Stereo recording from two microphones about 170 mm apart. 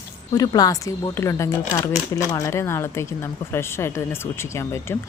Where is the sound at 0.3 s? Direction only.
20° left (ahead or behind).